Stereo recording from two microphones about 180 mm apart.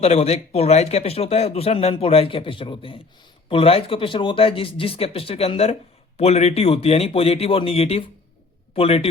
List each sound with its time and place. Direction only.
0.0 s a man's voice: 35° left (ahead or behind)